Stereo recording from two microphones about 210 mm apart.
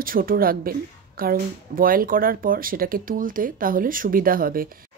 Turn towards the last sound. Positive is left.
turn(degrees=-45)  # may be behind; listen again after turning